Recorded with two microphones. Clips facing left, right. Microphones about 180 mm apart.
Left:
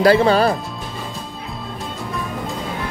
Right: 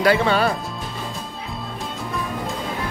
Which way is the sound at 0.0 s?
35° left (ahead or behind).